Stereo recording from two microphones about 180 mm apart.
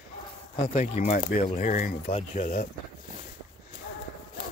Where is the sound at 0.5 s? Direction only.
40° left (ahead or behind).